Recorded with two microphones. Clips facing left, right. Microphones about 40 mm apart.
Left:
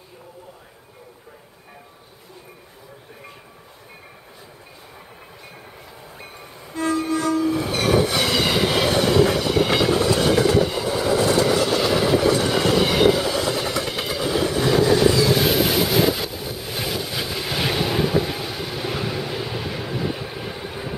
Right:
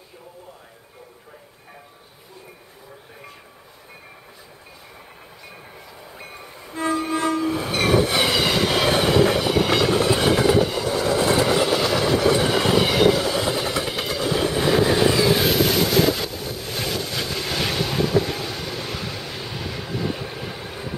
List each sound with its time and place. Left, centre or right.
6.6 s violin: centre
7.4 s train: centre
8.8 s train: centre
9.9 s train: centre
11.3 s vehicle: centre
11.8 s vehicle: centre
12.3 s train: centre
13.4 s vehicle: centre
15.5 s vehicle: centre